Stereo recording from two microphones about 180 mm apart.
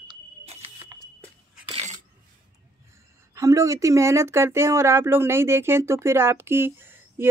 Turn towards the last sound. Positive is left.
turn(degrees=-10)  # may be behind; listen again after turning